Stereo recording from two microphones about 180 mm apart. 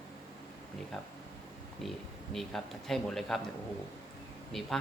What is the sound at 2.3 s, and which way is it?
Speech, centre (ahead or behind).